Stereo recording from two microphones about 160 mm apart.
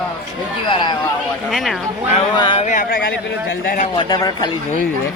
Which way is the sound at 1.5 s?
Centre (ahead or behind).